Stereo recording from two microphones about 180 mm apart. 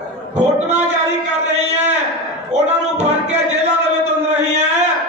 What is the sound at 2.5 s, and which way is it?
Music, 40° right (ahead or behind).